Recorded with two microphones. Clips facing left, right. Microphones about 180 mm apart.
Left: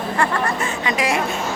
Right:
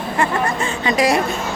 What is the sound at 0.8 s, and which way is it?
Speech, 35° right (ahead or behind).